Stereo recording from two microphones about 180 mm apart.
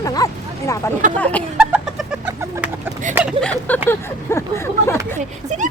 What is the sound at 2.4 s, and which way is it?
Chicken, 10° right (ahead or behind).